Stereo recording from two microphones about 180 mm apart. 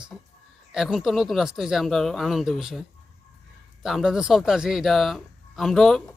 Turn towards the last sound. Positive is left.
turn(degrees=0)  # may be behind; listen again after turning